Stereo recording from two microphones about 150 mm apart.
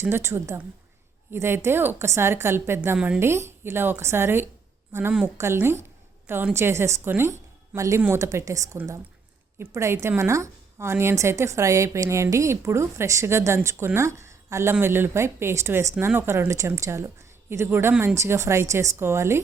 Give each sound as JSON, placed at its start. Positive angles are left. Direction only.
{"t": 0.0, "sound": "a woman's voice", "side_deg": -15}